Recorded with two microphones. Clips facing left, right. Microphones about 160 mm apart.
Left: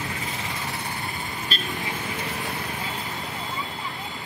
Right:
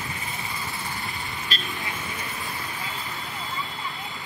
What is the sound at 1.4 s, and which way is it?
Vehicle, 40° left (ahead or behind).